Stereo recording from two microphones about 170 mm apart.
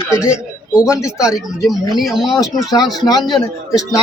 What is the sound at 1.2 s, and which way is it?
Speech, centre (ahead or behind).